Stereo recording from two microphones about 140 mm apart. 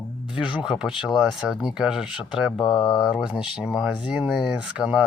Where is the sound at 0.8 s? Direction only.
Centre (ahead or behind).